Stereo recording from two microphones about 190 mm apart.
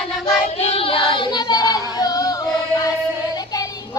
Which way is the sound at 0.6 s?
30° left (ahead or behind).